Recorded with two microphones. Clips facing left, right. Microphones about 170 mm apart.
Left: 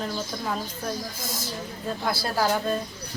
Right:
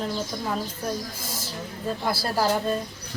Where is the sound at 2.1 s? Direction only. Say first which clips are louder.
Even; 5° right (ahead or behind).